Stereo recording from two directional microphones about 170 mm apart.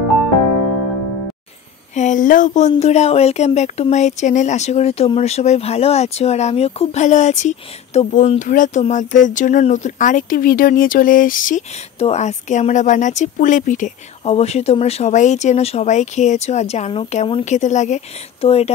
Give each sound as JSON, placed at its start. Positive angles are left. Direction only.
{"t": 2.0, "sound": "speech", "side_deg": 50}